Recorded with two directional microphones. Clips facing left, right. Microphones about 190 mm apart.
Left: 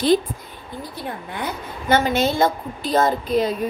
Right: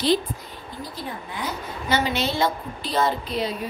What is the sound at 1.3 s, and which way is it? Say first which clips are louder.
A woman's voice: left 2 dB; 55° left (ahead or behind).